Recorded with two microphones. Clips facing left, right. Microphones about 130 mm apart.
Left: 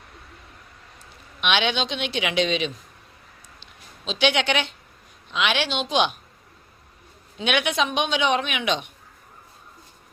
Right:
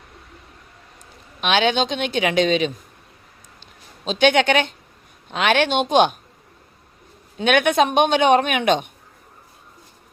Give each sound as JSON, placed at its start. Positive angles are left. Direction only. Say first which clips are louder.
{"t": 1.4, "sound": "a man's voice", "louder": "right 5 dB", "side_deg": -40}
{"t": 3.6, "sound": "a sound", "louder": "right 6 dB", "side_deg": -45}
{"t": 5.3, "sound": "a man's voice", "louder": "right 6 dB", "side_deg": -50}
{"t": 7.3, "sound": "a man's voice", "louder": "right 7 dB", "side_deg": -50}